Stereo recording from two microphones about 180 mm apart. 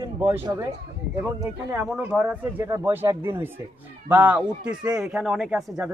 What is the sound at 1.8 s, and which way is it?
Speech, 5° right (ahead or behind).